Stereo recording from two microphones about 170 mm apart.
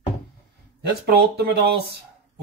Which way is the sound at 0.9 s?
70° right (ahead or behind).